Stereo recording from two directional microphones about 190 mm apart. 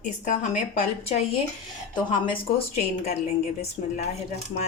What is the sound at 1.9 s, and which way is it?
Speech, 25° left (ahead or behind).